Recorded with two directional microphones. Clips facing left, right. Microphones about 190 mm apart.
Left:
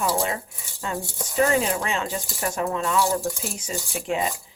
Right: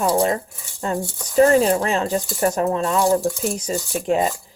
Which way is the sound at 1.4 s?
40° right (ahead or behind).